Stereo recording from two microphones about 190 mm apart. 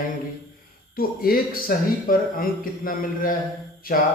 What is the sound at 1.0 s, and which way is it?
Speech, 50° left (ahead or behind).